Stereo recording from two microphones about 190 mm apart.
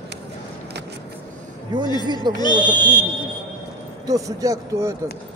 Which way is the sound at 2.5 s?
5° right (ahead or behind).